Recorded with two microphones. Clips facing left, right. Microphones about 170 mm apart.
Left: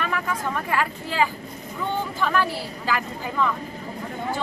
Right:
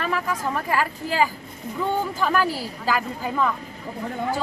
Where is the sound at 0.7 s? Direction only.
40° right (ahead or behind).